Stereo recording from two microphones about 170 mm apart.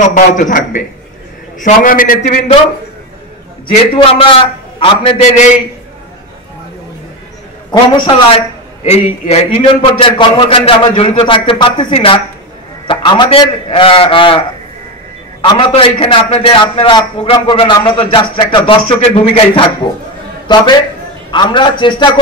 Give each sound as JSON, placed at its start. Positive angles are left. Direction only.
{"t": 0.0, "sound": "a man's voice", "side_deg": 50}
{"t": 3.9, "sound": "a man's voice", "side_deg": 30}
{"t": 7.7, "sound": "a man's voice", "side_deg": 25}
{"t": 8.8, "sound": "a man's voice", "side_deg": 40}
{"t": 15.4, "sound": "a man's voice", "side_deg": 30}